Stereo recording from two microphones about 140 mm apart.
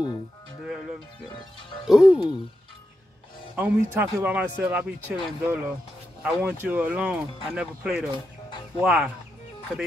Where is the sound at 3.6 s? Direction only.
10° right (ahead or behind).